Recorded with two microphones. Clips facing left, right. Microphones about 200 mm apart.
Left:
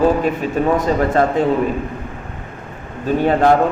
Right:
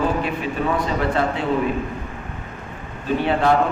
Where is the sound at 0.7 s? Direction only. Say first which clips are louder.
Left 6 dB; 45° left (ahead or behind).